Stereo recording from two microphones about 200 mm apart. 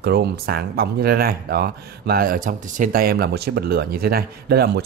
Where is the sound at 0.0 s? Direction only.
55° right (ahead or behind).